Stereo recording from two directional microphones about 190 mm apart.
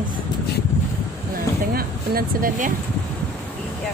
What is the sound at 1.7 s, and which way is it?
Speech, 50° right (ahead or behind).